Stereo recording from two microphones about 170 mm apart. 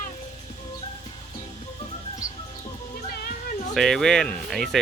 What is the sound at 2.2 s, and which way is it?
Music, 20° left (ahead or behind).